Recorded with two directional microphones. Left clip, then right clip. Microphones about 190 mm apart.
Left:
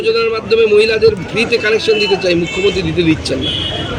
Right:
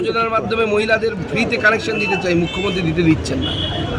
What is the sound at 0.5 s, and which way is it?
Speech, 35° right (ahead or behind).